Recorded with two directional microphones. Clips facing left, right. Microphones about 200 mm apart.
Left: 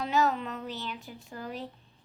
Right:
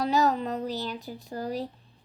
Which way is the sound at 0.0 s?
35° right (ahead or behind).